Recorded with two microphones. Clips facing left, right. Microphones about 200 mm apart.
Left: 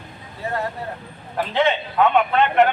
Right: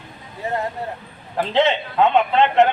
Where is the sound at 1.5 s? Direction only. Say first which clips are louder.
Right 1 dB; 25° right (ahead or behind).